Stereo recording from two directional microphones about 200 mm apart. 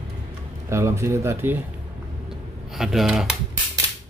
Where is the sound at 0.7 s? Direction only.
15° right (ahead or behind).